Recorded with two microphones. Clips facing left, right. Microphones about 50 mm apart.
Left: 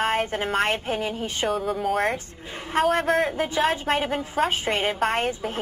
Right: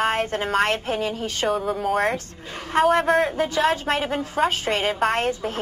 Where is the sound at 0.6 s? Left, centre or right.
Centre.